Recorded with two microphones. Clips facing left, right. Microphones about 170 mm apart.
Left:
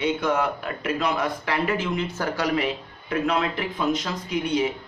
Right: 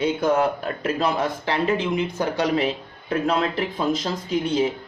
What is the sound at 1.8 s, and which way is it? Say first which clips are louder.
Speech: right 3 dB; 15° right (ahead or behind).